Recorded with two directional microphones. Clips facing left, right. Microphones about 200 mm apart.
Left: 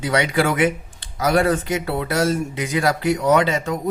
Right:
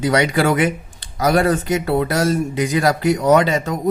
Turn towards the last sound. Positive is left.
turn(degrees=-40)  # may be behind; listen again after turning